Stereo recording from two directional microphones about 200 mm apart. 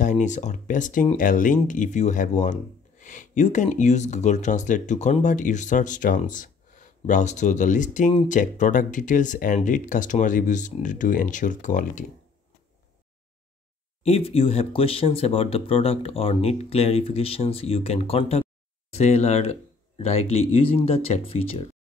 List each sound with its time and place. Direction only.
0.0 s speech: 35° left (ahead or behind)
14.0 s speech: 30° left (ahead or behind)